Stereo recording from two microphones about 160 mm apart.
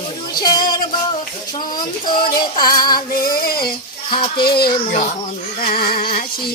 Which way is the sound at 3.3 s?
70° left (ahead or behind).